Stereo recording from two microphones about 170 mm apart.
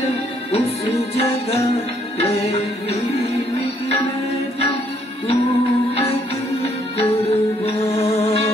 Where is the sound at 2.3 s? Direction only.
40° left (ahead or behind).